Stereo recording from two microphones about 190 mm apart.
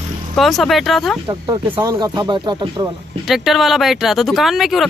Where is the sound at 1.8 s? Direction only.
20° right (ahead or behind).